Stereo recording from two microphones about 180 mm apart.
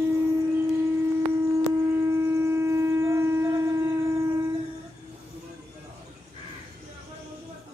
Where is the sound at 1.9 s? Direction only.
15° right (ahead or behind).